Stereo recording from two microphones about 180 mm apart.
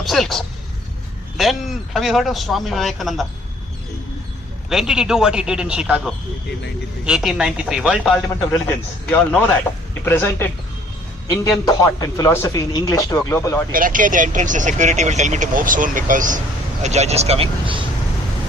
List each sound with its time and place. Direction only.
0.0 s a man's voice: centre (ahead or behind)
4.7 s a man's voice: 5° right (ahead or behind)
7.0 s a man's voice: centre (ahead or behind)
11.6 s speech: 20° left (ahead or behind)
13.7 s speech: 50° right (ahead or behind); by 17.8 s 30° right (ahead or behind)